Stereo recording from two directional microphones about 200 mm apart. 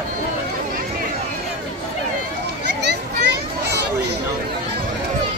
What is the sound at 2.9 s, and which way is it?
Children playing, 55° right (ahead or behind).